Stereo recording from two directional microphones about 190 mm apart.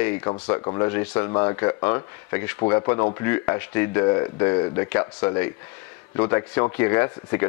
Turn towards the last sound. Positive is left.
turn(degrees=15)  # may be behind; listen again after turning